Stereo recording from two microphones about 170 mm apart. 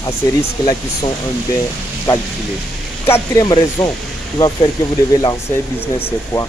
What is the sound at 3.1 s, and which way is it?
Speech, 20° left (ahead or behind).